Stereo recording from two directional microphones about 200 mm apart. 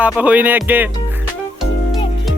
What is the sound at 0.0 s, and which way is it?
Speech, 5° right (ahead or behind).